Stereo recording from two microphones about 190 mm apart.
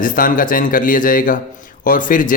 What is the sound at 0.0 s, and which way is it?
Speech, 45° left (ahead or behind).